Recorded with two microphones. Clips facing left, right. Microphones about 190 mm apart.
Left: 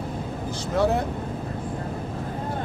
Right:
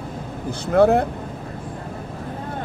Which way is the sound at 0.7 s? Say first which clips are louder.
Right 7 dB; 55° right (ahead or behind).